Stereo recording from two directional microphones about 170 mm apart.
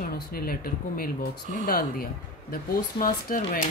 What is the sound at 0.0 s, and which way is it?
Speech, 60° left (ahead or behind).